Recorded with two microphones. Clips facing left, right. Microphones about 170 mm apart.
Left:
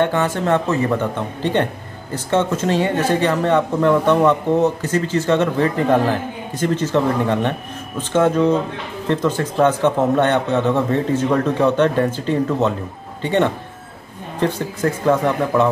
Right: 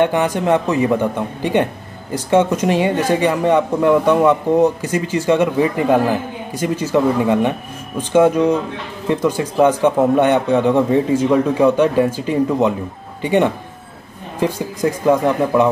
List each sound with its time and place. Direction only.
0.0 s speech: 15° right (ahead or behind)